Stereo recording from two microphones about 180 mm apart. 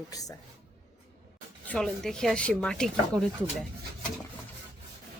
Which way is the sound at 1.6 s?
5° left (ahead or behind).